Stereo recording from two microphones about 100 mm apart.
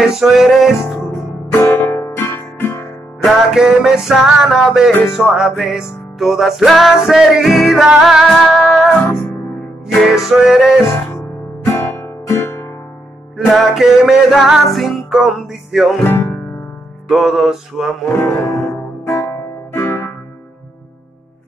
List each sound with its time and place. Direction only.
0.0 s music: 5° right (ahead or behind)
1.5 s music: 20° left (ahead or behind)
3.2 s music: 5° right (ahead or behind)
9.9 s music: 5° right (ahead or behind)
11.1 s music: 25° left (ahead or behind)
13.5 s music: centre (ahead or behind)
16.0 s speech: 20° left (ahead or behind)
17.1 s music: centre (ahead or behind)
18.0 s speech: 25° left (ahead or behind)
19.7 s music: 25° left (ahead or behind)